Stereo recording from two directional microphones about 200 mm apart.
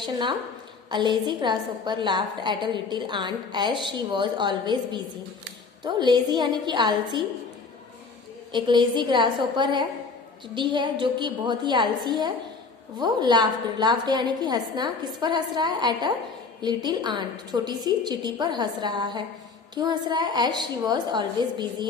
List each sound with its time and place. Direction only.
0.0 s a woman's voice: 20° right (ahead or behind)
8.5 s a woman's voice: 25° right (ahead or behind)